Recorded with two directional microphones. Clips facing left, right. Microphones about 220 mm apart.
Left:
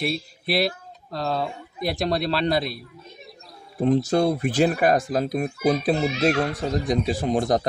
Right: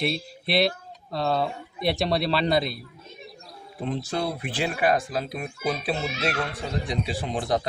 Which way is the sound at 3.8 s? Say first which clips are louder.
Left 9 dB; 45° left (ahead or behind).